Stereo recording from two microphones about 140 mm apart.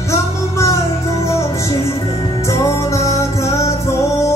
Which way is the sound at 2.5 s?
20° left (ahead or behind).